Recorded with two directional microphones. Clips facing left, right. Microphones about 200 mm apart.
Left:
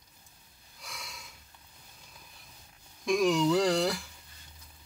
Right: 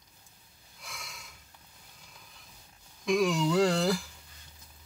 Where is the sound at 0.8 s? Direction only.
Centre (ahead or behind).